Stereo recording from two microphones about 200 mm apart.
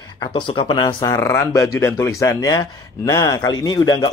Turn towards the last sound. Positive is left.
turn(degrees=20)  # may be behind; listen again after turning